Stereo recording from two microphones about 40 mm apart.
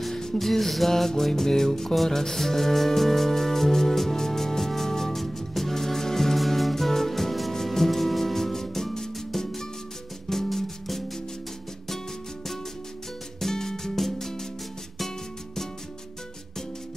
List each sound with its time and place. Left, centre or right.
0.1 s music: centre
13.4 s music: centre